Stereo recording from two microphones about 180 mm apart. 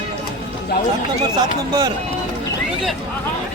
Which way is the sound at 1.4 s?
25° right (ahead or behind).